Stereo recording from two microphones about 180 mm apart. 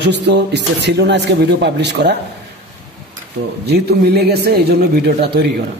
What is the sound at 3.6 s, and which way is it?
A man's voice, 60° right (ahead or behind).